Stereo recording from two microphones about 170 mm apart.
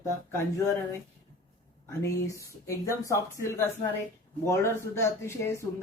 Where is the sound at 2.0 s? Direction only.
20° left (ahead or behind).